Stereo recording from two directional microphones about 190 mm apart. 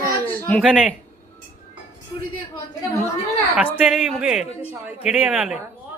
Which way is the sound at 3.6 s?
5° right (ahead or behind).